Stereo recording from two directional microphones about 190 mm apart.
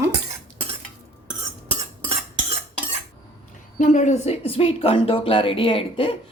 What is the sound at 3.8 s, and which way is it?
A woman's voice, 40° left (ahead or behind).